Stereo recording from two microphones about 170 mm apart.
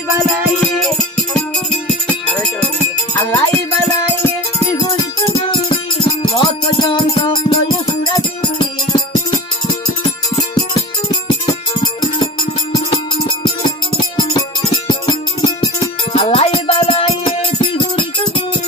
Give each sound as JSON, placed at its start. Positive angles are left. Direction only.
{"t": 0.8, "sound": "music", "side_deg": 0}
{"t": 3.2, "sound": "music", "side_deg": 15}
{"t": 4.6, "sound": "music", "side_deg": 20}
{"t": 12.7, "sound": "music", "side_deg": 25}
{"t": 16.1, "sound": "music", "side_deg": 35}